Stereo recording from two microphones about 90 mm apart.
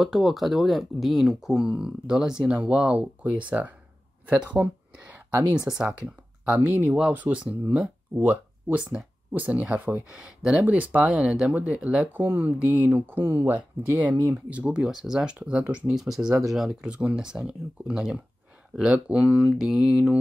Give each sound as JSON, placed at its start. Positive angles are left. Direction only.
{"t": 0.0, "sound": "speech", "side_deg": 0}
{"t": 6.7, "sound": "speech", "side_deg": -25}